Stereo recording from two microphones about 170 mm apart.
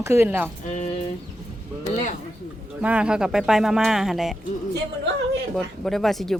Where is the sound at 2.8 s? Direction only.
5° right (ahead or behind).